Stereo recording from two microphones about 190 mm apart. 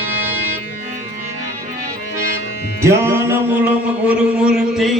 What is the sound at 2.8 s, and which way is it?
Music, 15° right (ahead or behind).